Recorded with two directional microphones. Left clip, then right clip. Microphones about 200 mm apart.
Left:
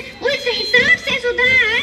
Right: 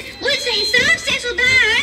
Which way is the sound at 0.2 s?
20° left (ahead or behind).